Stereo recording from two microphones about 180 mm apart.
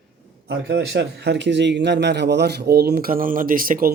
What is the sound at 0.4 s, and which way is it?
A man's voice, 75° right (ahead or behind).